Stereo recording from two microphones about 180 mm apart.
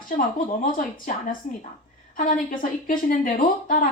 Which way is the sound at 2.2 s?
50° left (ahead or behind).